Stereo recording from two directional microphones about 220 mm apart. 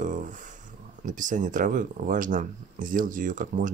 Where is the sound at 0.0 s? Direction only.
35° right (ahead or behind).